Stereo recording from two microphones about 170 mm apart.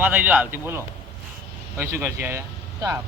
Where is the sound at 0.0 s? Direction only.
10° right (ahead or behind).